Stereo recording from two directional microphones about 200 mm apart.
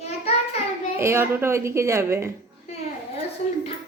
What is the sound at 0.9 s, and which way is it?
A woman's voice, 10° right (ahead or behind).